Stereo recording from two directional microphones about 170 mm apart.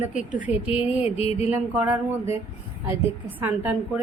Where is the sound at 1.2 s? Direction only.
35° left (ahead or behind).